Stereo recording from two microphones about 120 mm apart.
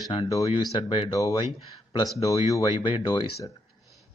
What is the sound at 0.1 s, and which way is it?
Speech, 50° left (ahead or behind).